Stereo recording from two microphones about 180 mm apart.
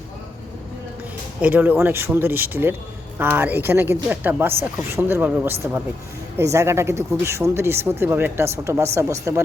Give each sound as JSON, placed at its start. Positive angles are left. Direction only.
{"t": 1.4, "sound": "speech", "side_deg": -10}